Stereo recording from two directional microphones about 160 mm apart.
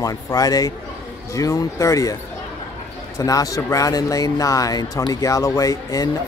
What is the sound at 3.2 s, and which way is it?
Speech, 20° left (ahead or behind).